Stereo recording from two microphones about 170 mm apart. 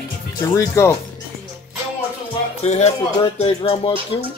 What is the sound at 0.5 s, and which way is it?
Speech, 20° left (ahead or behind).